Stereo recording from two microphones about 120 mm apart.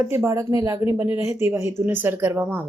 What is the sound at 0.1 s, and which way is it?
Speech, 25° right (ahead or behind).